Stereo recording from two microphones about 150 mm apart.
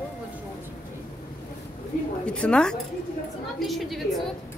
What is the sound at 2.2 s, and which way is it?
A woman's voice, 5° left (ahead or behind).